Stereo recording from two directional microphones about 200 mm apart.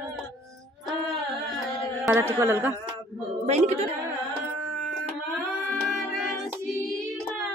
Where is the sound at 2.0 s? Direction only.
10° right (ahead or behind).